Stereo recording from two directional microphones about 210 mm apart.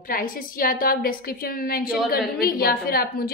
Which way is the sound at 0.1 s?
40° left (ahead or behind).